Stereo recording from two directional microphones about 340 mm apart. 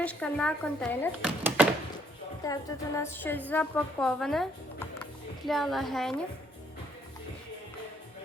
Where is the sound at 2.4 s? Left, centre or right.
Centre.